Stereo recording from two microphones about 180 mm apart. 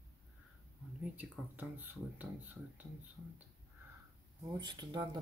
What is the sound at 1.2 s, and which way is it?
Speech, 10° right (ahead or behind).